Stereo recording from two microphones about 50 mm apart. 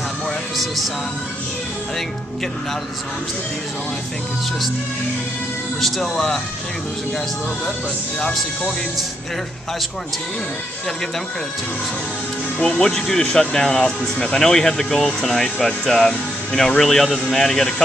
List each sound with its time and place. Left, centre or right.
5.8 s speech: centre
8.2 s speech: centre
12.5 s speech: centre